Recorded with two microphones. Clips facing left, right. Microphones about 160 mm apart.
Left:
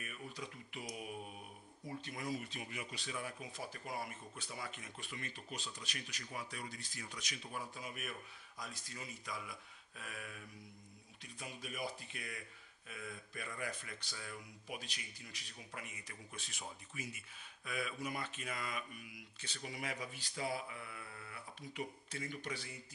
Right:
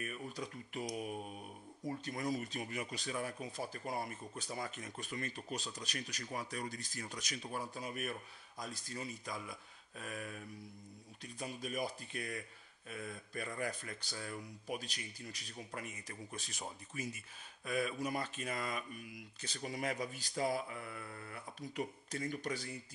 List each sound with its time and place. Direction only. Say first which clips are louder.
0.0 s speech: right 5 dB; 40° right (ahead or behind)